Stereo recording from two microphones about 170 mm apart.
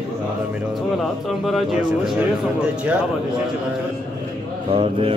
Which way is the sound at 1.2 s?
Centre (ahead or behind).